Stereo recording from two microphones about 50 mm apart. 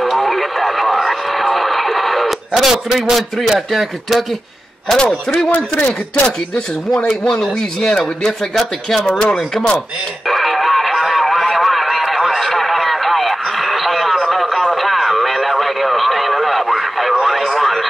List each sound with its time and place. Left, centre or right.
0.0 s radio: centre
3.5 s speech: centre
4.9 s speech: centre
8.3 s speech: centre
10.2 s music: centre